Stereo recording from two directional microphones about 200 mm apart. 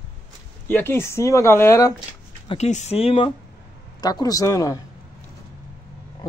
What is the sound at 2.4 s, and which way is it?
Speech, 35° left (ahead or behind).